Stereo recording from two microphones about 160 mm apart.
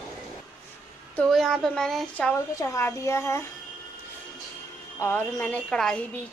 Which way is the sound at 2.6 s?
15° left (ahead or behind).